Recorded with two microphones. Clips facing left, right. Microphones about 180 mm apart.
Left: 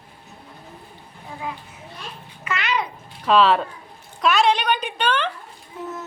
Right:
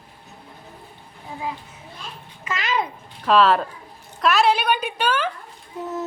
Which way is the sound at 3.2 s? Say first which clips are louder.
Even; centre (ahead or behind).